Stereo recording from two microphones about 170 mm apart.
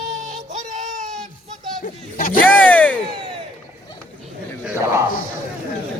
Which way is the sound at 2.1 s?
55° left (ahead or behind).